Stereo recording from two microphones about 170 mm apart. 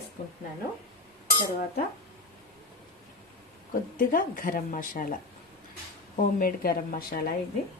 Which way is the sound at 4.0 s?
55° left (ahead or behind).